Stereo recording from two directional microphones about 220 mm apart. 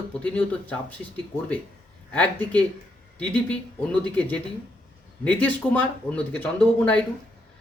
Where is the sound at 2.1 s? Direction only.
5° left (ahead or behind).